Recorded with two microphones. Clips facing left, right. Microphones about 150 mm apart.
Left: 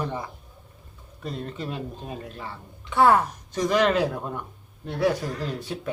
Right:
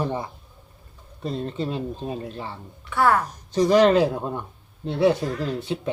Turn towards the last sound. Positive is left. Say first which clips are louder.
# right 4 dB
turn(degrees=-25)  # may be behind; listen again after turning